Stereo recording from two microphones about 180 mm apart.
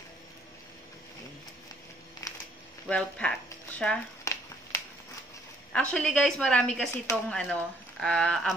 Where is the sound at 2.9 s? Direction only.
5° left (ahead or behind).